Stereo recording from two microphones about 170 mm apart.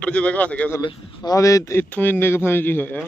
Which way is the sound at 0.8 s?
25° left (ahead or behind).